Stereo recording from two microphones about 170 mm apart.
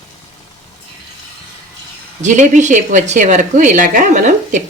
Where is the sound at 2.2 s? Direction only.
45° right (ahead or behind).